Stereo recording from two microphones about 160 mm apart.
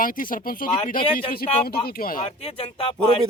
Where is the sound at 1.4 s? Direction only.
75° left (ahead or behind).